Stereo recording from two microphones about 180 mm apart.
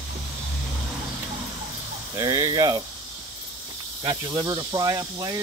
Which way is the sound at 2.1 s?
20° right (ahead or behind).